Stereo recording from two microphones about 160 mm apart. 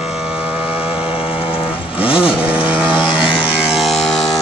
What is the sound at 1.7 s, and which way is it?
Vehicle, 35° left (ahead or behind).